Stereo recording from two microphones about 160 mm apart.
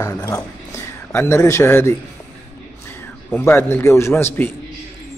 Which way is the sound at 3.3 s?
15° left (ahead or behind).